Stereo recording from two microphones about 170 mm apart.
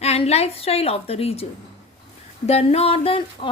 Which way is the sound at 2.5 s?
35° left (ahead or behind).